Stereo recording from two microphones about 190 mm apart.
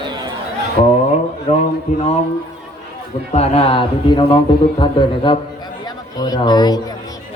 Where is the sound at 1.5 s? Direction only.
35° left (ahead or behind).